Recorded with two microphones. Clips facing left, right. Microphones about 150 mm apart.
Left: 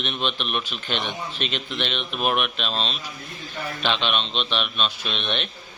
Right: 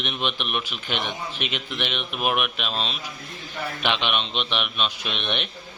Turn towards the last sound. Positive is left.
turn(degrees=-15)  # may be behind; listen again after turning